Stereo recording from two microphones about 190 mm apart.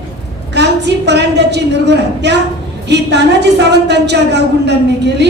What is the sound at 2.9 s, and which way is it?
A woman's voice, 65° right (ahead or behind).